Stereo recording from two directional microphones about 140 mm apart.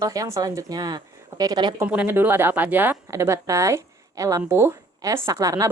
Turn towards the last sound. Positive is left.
turn(degrees=-25)  # may be behind; listen again after turning